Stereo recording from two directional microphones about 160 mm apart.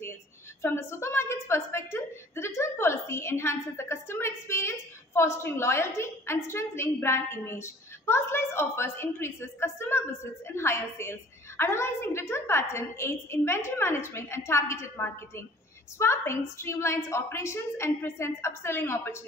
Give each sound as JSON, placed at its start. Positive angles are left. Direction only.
{"t": 0.6, "sound": "a woman's voice", "side_deg": 15}